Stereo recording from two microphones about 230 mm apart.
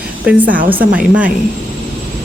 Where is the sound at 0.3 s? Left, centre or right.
Centre.